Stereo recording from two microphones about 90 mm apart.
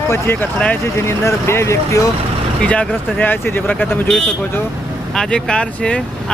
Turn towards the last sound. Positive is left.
turn(degrees=10)  # may be behind; listen again after turning